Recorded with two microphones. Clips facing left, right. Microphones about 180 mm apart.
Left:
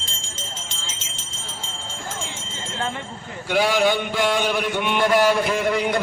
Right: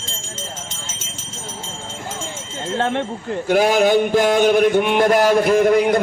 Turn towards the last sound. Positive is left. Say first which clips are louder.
# right 7 dB
turn(degrees=-45)  # may be behind; listen again after turning